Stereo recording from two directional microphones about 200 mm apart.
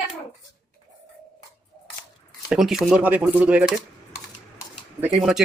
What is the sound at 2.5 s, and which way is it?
Speech, centre (ahead or behind).